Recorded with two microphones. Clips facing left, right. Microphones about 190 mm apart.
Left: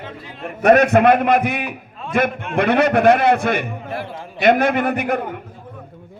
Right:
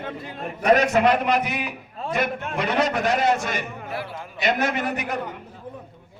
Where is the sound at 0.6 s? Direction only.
60° left (ahead or behind).